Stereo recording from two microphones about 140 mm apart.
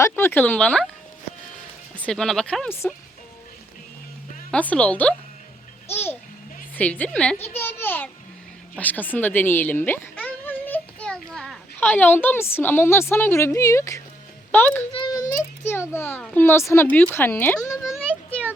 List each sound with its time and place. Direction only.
0.0 s a woman's voice: 15° left (ahead or behind)
2.0 s speech: 5° left (ahead or behind)
4.5 s a woman's voice: 10° left (ahead or behind)
11.8 s a woman's voice: 15° left (ahead or behind)
14.9 s a child's voice: 30° left (ahead or behind); by 17.6 s 15° left (ahead or behind)
17.6 s a child's voice: 25° left (ahead or behind)